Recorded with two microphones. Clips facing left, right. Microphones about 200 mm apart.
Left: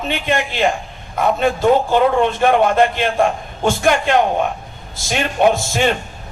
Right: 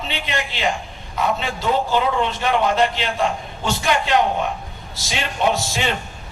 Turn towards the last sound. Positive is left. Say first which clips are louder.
# left 6 dB
turn(degrees=50)  # may be behind; listen again after turning